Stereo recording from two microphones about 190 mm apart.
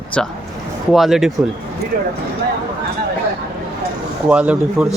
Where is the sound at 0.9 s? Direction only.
Centre (ahead or behind).